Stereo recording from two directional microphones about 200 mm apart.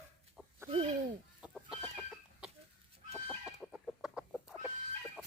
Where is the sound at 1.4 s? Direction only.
Centre (ahead or behind).